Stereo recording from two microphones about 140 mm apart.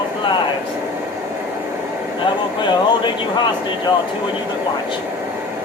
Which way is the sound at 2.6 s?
35° left (ahead or behind).